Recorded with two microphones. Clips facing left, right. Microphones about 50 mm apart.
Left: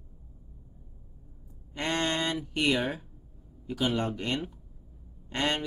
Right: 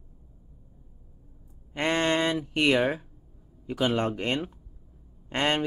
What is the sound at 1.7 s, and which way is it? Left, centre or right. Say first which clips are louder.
Speech: right 5 dB; right.